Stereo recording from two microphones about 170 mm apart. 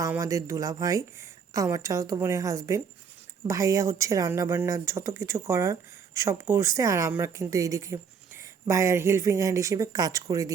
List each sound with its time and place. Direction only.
0.1 s speech: 20° right (ahead or behind)